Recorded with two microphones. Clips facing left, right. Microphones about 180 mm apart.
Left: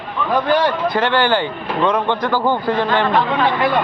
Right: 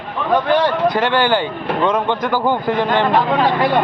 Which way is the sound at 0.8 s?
15° right (ahead or behind).